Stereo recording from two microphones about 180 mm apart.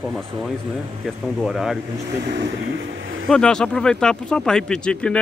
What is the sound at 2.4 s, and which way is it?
Speech, 90° right.